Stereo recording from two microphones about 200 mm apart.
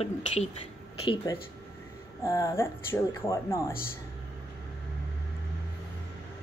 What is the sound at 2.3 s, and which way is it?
Speech, 15° left (ahead or behind).